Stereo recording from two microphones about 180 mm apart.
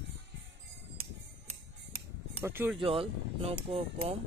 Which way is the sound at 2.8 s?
30° right (ahead or behind).